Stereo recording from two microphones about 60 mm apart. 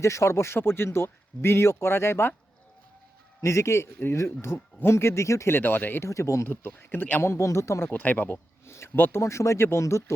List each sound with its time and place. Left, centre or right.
0.0 s speech: left
3.4 s speech: left
5.5 s speech: left
6.1 s speech: left
6.5 s speech: left
7.2 s speech: left
7.9 s speech: left
8.6 s speech: left
9.2 s speech: left